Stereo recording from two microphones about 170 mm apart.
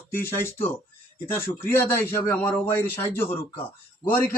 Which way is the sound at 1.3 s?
15° left (ahead or behind).